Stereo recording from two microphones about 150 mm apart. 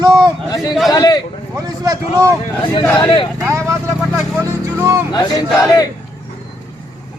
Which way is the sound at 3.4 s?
20° right (ahead or behind).